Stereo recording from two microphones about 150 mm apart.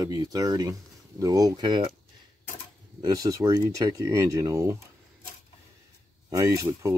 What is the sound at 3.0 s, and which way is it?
Speech, 25° right (ahead or behind).